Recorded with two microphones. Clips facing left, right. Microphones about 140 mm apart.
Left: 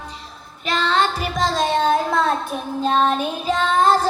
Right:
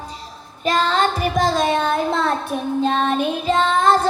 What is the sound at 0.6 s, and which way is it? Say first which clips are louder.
Child singing: right 2 dB; 45° right (ahead or behind).